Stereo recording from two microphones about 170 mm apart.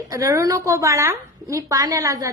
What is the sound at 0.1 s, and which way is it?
A woman's voice, 20° right (ahead or behind).